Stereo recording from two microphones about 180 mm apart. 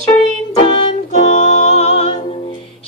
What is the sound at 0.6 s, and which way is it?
Music, 35° left (ahead or behind).